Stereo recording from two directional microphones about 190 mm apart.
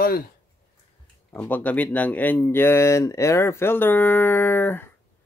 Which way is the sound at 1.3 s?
10° left (ahead or behind).